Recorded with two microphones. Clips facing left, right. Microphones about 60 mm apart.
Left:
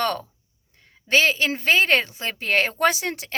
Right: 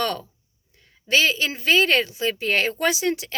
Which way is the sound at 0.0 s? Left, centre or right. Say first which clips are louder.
Left 1 dB; left.